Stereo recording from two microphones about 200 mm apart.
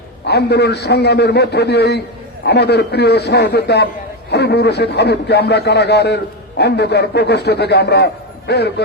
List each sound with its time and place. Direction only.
0.3 s a man's voice: 55° left (ahead or behind)